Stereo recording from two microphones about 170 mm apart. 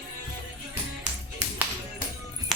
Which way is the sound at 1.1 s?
45° right (ahead or behind).